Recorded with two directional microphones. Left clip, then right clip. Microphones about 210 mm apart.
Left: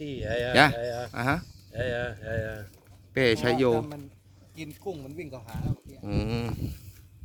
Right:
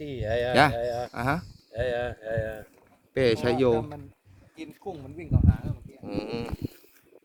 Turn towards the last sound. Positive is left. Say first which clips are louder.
# even
turn(degrees=0)  # may be behind; listen again after turning